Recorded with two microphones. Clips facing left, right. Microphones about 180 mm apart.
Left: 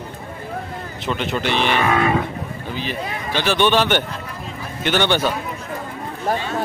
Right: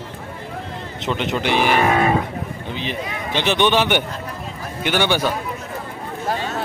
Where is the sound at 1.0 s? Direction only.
20° right (ahead or behind).